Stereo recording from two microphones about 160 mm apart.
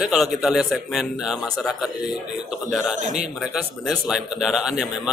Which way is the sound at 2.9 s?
50° right (ahead or behind).